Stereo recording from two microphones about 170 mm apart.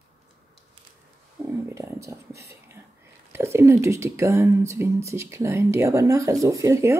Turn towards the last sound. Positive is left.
turn(degrees=-15)  # may be behind; listen again after turning